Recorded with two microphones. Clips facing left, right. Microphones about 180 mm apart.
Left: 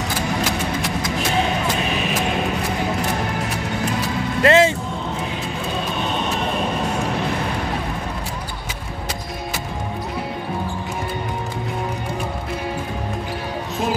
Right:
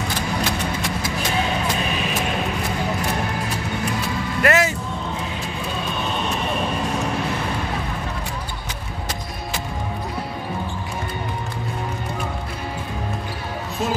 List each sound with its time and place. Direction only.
4.4 s music: 25° left (ahead or behind)